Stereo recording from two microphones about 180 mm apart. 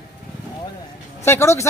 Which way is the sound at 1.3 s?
15° left (ahead or behind).